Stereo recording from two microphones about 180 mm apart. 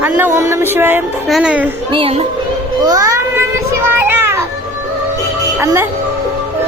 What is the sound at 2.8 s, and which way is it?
Music, 20° right (ahead or behind).